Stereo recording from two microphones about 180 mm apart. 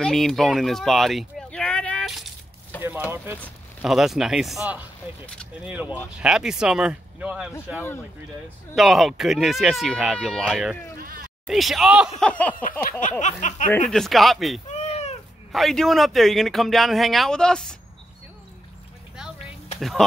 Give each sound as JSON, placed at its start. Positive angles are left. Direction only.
{"t": 0.0, "sound": "speech", "side_deg": 0}
{"t": 2.7, "sound": "a sound", "side_deg": 10}
{"t": 3.3, "sound": "a man's voice", "side_deg": 5}
{"t": 5.2, "sound": "speech", "side_deg": 5}
{"t": 5.7, "sound": "a man's voice", "side_deg": -10}
{"t": 8.7, "sound": "a man's voice", "side_deg": 0}
{"t": 11.0, "sound": "bleat", "side_deg": -55}
{"t": 11.4, "sound": "a man's voice", "side_deg": 0}
{"t": 12.2, "sound": "a sound", "side_deg": 5}
{"t": 13.2, "sound": "speech", "side_deg": 45}
{"t": 13.8, "sound": "a man's voice", "side_deg": 0}
{"t": 14.7, "sound": "cat", "side_deg": 40}
{"t": 15.5, "sound": "a man's voice", "side_deg": 0}
{"t": 19.8, "sound": "a man's voice", "side_deg": 0}